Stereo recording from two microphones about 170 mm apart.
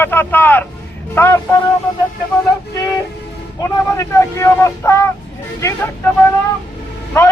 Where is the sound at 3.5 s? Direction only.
15° left (ahead or behind).